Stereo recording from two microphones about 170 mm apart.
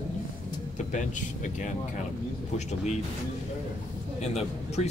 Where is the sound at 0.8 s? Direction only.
45° left (ahead or behind).